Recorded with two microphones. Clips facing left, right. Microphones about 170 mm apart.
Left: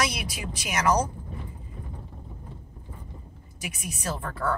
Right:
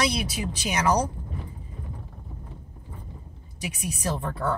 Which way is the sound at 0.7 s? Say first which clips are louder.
Even; 30° right (ahead or behind).